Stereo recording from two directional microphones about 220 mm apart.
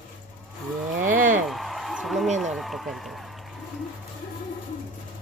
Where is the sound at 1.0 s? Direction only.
35° right (ahead or behind).